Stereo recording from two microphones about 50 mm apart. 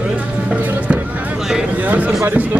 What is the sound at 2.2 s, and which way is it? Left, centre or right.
Speech, right.